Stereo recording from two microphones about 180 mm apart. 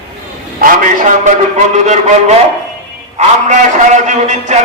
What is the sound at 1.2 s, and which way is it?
A man's voice, 40° right (ahead or behind).